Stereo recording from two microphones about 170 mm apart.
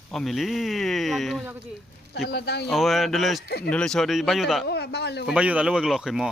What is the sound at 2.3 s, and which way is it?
Speech, 85° left.